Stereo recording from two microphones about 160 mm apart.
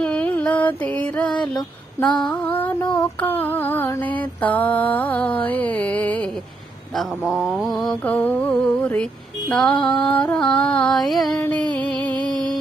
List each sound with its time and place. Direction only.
0.0 s music: 10° left (ahead or behind)
2.0 s mantra: 5° left (ahead or behind)
2.8 s child singing: 25° left (ahead or behind)
3.2 s mantra: 10° left (ahead or behind)
11.3 s music: 10° left (ahead or behind)